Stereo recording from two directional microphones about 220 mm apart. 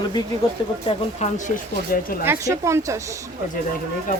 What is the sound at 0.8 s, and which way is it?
Speech, 30° left (ahead or behind).